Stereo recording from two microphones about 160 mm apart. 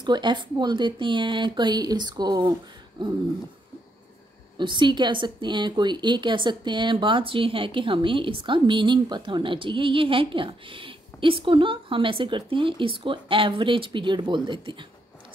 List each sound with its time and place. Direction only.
0.0 s speech: 30° right (ahead or behind)
4.6 s speech: 30° right (ahead or behind)